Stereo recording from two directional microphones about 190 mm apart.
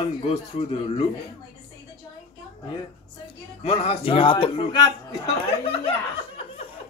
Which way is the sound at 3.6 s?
30° left (ahead or behind).